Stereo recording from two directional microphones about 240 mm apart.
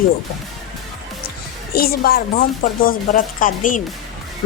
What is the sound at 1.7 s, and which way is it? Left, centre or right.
A woman's voice, left.